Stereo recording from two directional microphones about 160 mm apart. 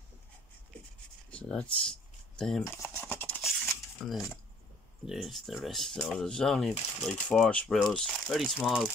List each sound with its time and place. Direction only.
1.3 s a sound: 5° left (ahead or behind)
4.0 s speech: centre (ahead or behind)
6.7 s speech: 40° left (ahead or behind)
7.1 s speech: 5° left (ahead or behind)